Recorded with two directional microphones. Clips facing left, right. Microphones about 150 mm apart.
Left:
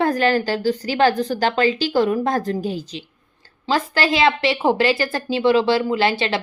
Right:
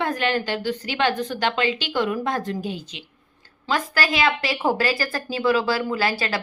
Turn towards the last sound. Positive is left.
turn(degrees=25)  # may be behind; listen again after turning